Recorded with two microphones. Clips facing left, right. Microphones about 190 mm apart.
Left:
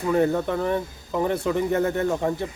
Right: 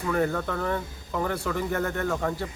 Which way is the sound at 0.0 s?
20° left (ahead or behind).